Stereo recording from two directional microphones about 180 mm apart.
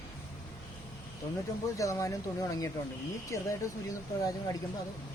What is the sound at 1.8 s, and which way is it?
Speech, 15° left (ahead or behind).